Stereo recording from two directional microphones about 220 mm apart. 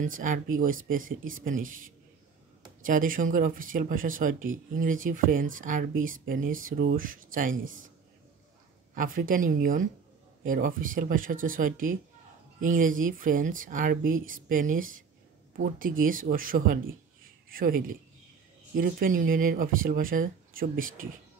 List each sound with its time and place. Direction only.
0.0 s speech: 35° right (ahead or behind)
8.9 s speech: 40° right (ahead or behind)